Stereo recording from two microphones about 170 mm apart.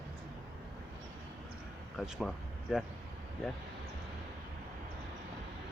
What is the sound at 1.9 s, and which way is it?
Speech, centre (ahead or behind).